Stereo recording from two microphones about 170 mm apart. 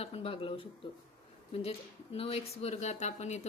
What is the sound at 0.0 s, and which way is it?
Speech, 35° left (ahead or behind).